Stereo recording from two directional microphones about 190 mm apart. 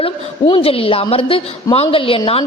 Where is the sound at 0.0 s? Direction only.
25° left (ahead or behind).